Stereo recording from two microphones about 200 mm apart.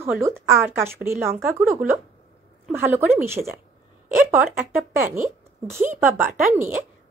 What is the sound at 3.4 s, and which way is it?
Speech, 25° right (ahead or behind).